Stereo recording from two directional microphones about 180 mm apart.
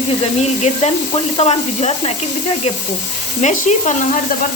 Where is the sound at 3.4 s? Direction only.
40° left (ahead or behind).